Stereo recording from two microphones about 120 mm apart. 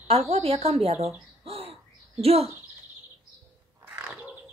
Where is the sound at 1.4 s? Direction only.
55° right (ahead or behind).